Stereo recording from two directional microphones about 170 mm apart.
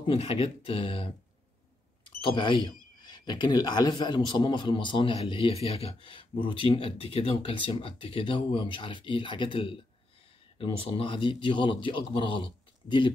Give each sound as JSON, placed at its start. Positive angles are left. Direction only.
{"t": 0.0, "sound": "speech", "side_deg": 35}
{"t": 2.2, "sound": "a man's voice", "side_deg": 30}